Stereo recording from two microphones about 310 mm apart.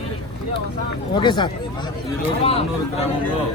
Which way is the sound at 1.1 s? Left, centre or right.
Centre.